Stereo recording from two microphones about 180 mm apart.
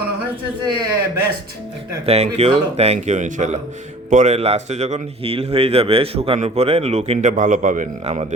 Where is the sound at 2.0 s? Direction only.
35° right (ahead or behind).